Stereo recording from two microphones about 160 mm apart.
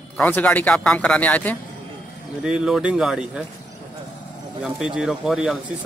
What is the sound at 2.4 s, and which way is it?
Speech, 5° right (ahead or behind).